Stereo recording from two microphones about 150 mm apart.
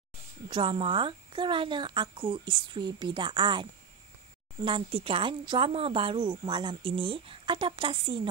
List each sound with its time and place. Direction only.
0.5 s speech: 35° right (ahead or behind)
4.6 s speech: 40° right (ahead or behind)